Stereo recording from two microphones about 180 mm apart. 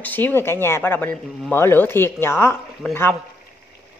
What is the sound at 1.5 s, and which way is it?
Speech, 15° left (ahead or behind).